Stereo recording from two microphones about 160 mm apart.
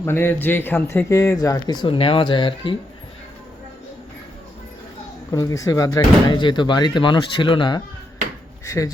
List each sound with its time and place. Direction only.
0.0 s speech: 15° left (ahead or behind); by 2.7 s 30° left (ahead or behind)
5.3 s speech: 20° left (ahead or behind)
8.6 s speech: 20° left (ahead or behind)